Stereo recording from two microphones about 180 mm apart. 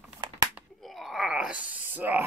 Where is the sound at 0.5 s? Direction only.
Centre (ahead or behind).